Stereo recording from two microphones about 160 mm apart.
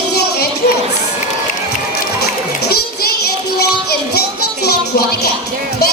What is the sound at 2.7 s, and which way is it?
Child singing, 75° left (ahead or behind).